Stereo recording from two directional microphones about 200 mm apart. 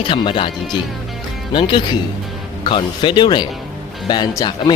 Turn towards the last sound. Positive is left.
turn(degrees=20)  # may be behind; listen again after turning